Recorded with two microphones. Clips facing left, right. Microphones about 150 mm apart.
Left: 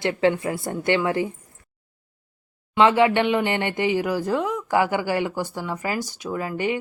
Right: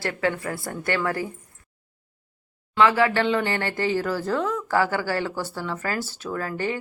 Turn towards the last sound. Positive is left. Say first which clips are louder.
# left 2 dB
turn(degrees=15)  # may be behind; listen again after turning